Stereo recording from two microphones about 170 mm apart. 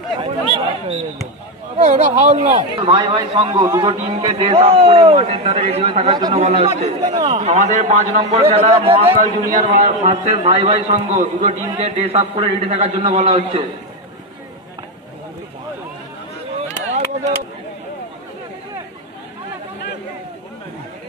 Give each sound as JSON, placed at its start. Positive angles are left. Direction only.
{"t": 0.2, "sound": "speech", "side_deg": -30}
{"t": 2.7, "sound": "a man's voice", "side_deg": -30}
{"t": 4.2, "sound": "a man's voice", "side_deg": -35}
{"t": 6.0, "sound": "a man's voice", "side_deg": -25}
{"t": 6.3, "sound": "a man's voice", "side_deg": -40}
{"t": 9.5, "sound": "speech", "side_deg": -45}
{"t": 10.3, "sound": "a man's voice", "side_deg": -35}
{"t": 16.6, "sound": "chop", "side_deg": -40}